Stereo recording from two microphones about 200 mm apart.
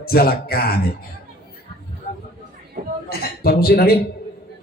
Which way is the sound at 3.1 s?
50° left (ahead or behind).